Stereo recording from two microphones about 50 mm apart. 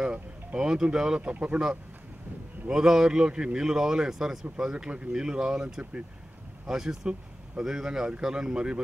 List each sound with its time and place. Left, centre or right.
0.0 s a sound: right
0.9 s speech: centre
1.3 s speech: right
2.7 s speech: centre